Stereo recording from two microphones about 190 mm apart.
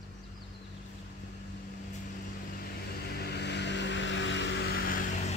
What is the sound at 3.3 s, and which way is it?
Vehicle, 60° left (ahead or behind).